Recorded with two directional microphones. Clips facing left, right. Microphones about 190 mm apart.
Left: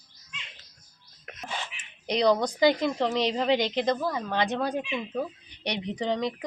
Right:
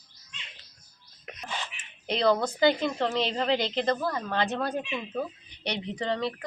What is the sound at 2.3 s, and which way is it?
Speech, centre (ahead or behind).